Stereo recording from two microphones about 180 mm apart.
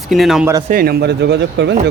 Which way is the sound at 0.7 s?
55° right (ahead or behind).